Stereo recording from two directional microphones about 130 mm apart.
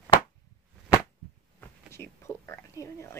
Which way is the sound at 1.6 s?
20° left (ahead or behind).